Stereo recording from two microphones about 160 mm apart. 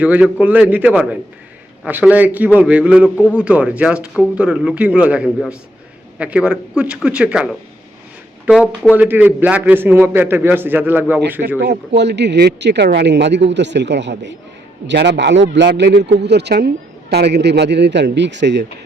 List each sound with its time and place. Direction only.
0.0 s a man's voice: 10° right (ahead or behind)
11.9 s speech: 90° right